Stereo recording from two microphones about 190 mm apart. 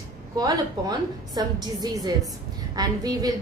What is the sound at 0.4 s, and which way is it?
A woman's voice, 20° right (ahead or behind).